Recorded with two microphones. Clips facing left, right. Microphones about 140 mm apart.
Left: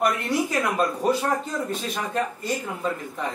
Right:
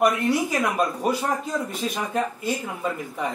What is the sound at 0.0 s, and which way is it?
Speech, 10° right (ahead or behind).